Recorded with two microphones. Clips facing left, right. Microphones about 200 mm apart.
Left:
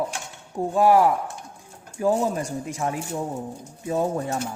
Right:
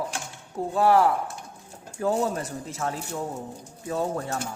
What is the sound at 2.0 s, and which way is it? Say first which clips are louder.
Speech: left 3 dB; 10° left (ahead or behind).